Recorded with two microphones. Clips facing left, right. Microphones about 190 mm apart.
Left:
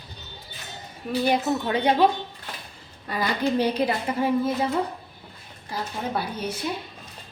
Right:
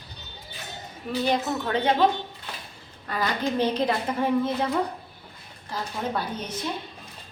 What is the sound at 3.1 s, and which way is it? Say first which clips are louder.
A woman's voice: left 2 dB; 10° left (ahead or behind).